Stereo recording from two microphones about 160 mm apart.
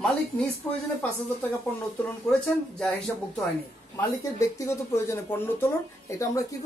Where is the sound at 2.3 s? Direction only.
5° left (ahead or behind).